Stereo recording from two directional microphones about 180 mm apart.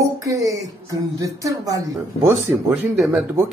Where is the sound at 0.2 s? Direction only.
20° right (ahead or behind).